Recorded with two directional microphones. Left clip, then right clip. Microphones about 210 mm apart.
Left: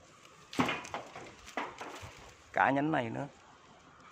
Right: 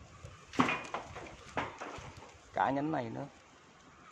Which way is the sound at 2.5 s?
25° left (ahead or behind).